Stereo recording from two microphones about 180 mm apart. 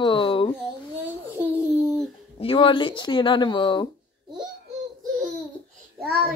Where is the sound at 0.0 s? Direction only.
30° left (ahead or behind).